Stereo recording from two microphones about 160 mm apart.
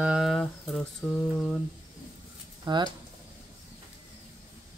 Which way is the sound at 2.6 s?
25° right (ahead or behind).